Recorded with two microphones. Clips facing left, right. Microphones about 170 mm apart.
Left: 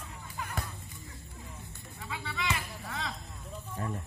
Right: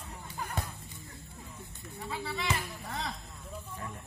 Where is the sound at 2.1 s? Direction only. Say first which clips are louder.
Right 1 dB; 35° right (ahead or behind).